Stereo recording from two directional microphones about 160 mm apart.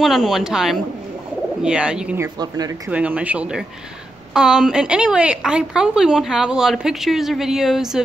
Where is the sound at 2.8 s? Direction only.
10° right (ahead or behind).